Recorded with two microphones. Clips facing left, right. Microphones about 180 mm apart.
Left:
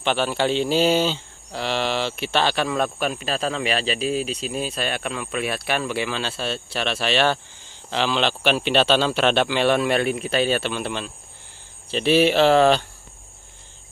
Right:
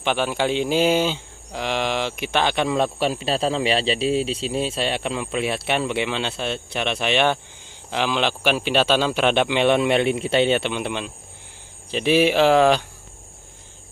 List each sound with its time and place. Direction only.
0.0 s speech: 10° right (ahead or behind)